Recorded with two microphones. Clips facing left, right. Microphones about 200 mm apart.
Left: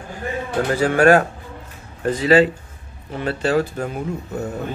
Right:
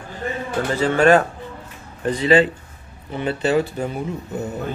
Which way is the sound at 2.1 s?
40° left (ahead or behind).